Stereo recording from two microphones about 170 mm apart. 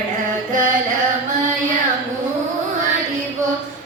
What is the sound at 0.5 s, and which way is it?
Music, 50° right (ahead or behind).